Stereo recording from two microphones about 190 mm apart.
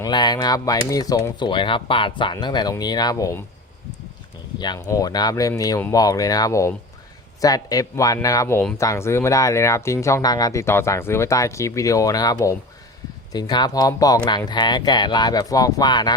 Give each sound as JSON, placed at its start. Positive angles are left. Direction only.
{"t": 0.0, "sound": "speech", "side_deg": 20}
{"t": 4.6, "sound": "speech", "side_deg": 20}